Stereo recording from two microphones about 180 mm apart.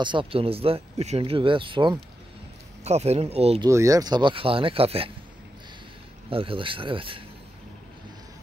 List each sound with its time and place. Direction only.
0.0 s speech: 25° right (ahead or behind)
3.6 s speech: 20° right (ahead or behind)
6.3 s speech: 30° right (ahead or behind)